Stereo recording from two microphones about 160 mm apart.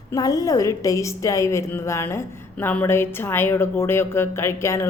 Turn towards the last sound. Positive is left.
turn(degrees=15)  # may be behind; listen again after turning